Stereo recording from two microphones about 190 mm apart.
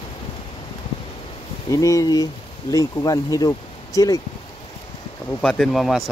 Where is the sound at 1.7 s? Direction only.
15° left (ahead or behind).